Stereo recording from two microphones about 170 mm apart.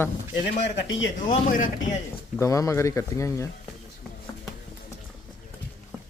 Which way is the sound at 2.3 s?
20° left (ahead or behind).